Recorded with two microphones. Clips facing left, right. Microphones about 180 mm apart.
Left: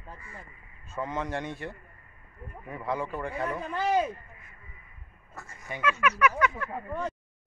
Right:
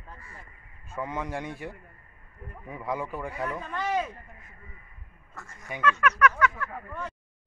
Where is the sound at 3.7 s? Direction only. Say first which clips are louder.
Left 3 dB; 30° left (ahead or behind).